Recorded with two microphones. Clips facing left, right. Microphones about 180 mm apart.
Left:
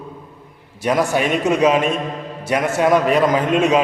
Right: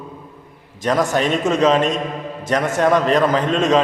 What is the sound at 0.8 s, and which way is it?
A man's voice, 10° left (ahead or behind).